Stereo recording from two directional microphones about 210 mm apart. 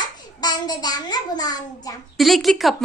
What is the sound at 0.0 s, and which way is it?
A child's voice, 20° left (ahead or behind).